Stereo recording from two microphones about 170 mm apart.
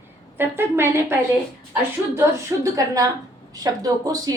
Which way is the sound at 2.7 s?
20° right (ahead or behind).